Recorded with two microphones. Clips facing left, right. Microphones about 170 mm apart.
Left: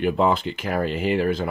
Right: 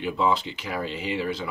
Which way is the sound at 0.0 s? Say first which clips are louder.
Left 4 dB; 55° left (ahead or behind).